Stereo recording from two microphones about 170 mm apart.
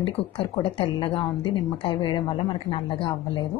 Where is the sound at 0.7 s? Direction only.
30° left (ahead or behind).